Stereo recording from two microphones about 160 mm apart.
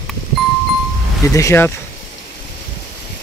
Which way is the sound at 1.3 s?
20° left (ahead or behind).